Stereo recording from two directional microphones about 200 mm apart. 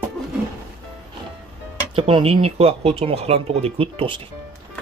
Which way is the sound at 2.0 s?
25° right (ahead or behind).